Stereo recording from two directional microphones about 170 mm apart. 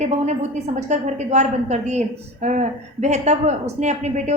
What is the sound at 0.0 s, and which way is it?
A woman's voice, 40° right (ahead or behind).